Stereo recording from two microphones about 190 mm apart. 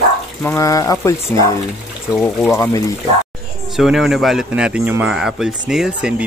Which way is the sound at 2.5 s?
15° left (ahead or behind).